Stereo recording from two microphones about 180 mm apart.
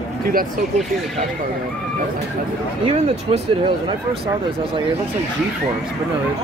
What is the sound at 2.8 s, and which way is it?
Speech, 35° right (ahead or behind).